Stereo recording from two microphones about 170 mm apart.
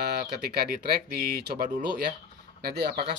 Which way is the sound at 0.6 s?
65° right (ahead or behind).